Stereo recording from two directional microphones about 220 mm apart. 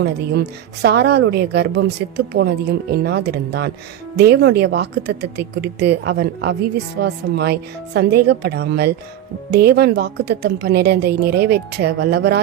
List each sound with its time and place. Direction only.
0.0 s a woman's voice: 50° right (ahead or behind)